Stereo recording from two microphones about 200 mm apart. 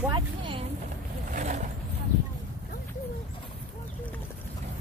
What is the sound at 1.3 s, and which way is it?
Vehicle, 35° right (ahead or behind).